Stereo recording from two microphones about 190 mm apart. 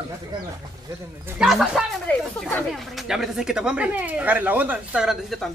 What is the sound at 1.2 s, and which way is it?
Speech, 5° right (ahead or behind).